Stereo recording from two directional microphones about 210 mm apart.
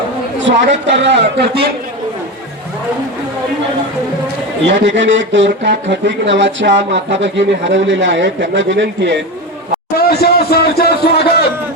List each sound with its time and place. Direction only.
0.4 s speech: 55° right (ahead or behind)
4.7 s speech: 60° right (ahead or behind)
10.0 s a sound: 50° left (ahead or behind)